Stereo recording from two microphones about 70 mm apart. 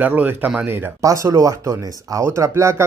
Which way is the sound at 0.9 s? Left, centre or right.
Right.